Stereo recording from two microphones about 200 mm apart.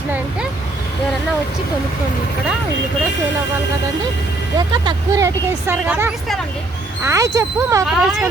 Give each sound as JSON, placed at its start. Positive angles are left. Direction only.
{"t": 4.5, "sound": "speech", "side_deg": -20}
{"t": 7.0, "sound": "speech", "side_deg": -15}
{"t": 7.9, "sound": "speech", "side_deg": -5}